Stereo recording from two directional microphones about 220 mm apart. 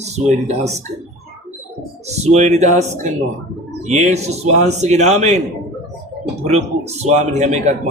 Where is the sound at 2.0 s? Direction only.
30° right (ahead or behind).